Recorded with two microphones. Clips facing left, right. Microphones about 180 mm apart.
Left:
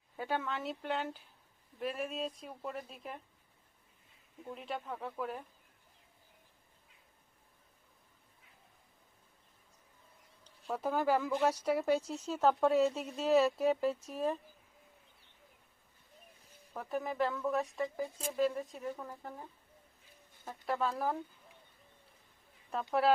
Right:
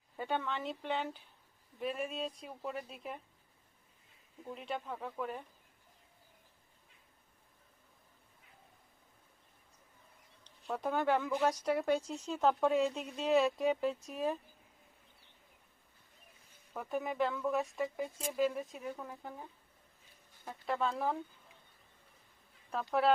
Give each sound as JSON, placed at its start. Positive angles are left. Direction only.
{"t": 0.2, "sound": "speech", "side_deg": 5}
{"t": 4.4, "sound": "speech", "side_deg": 0}
{"t": 10.7, "sound": "speech", "side_deg": 5}
{"t": 16.7, "sound": "speech", "side_deg": 0}
{"t": 22.7, "sound": "speech", "side_deg": 0}